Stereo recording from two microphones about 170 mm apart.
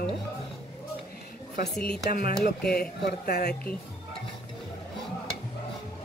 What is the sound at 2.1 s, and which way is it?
Speech, 60° left (ahead or behind).